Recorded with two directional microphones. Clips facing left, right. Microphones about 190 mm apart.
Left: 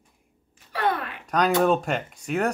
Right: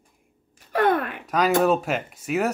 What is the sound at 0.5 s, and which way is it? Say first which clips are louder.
Wail: right 5 dB; 50° right (ahead or behind).